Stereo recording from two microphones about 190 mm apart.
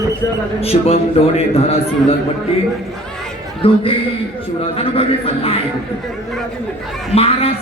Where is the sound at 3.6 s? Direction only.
30° left (ahead or behind).